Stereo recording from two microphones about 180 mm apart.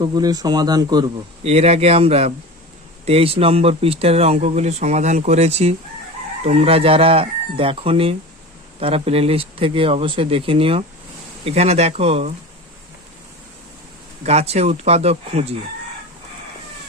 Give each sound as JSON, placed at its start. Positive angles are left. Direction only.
{"t": 0.0, "sound": "speech", "side_deg": -20}
{"t": 1.5, "sound": "speech", "side_deg": -35}
{"t": 14.3, "sound": "speech", "side_deg": -35}